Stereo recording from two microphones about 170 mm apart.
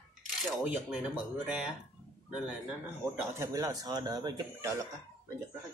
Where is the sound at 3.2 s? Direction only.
15° right (ahead or behind).